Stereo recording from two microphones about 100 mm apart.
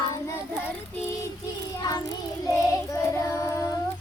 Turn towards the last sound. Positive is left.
turn(degrees=30)  # may be behind; listen again after turning